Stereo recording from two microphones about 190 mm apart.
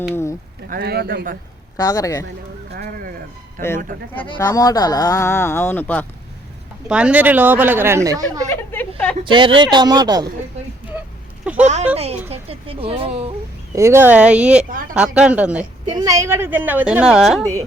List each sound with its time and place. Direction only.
0.1 s a sound: 15° left (ahead or behind)
0.7 s a man's voice: 55° right (ahead or behind)
1.7 s speech: 20° left (ahead or behind)
2.7 s fowl: 50° right (ahead or behind)
3.6 s a man's voice: 45° right (ahead or behind)
4.4 s speech: 15° left (ahead or behind)
6.8 s speech: 5° right (ahead or behind)
8.4 s speech: 10° left (ahead or behind)
9.2 s speech: 25° right (ahead or behind)
11.6 s speech: 35° right (ahead or behind)
13.7 s speech: 15° right (ahead or behind)
15.9 s speech: 20° right (ahead or behind); by 17.4 s centre (ahead or behind)